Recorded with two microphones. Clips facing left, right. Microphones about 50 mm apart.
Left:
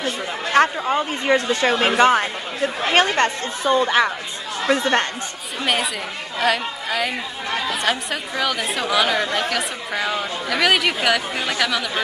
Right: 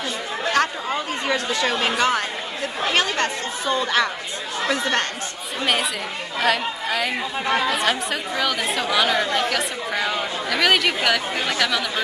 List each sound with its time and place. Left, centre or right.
0.5 s speech: left
5.6 s speech: centre